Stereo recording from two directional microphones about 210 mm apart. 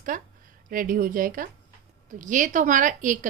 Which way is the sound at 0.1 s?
40° right (ahead or behind).